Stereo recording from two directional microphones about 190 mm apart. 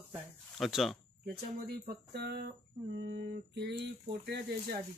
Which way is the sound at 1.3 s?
55° right (ahead or behind).